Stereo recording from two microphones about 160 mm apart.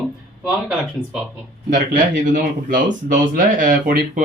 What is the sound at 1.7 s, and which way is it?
Speech, 50° right (ahead or behind).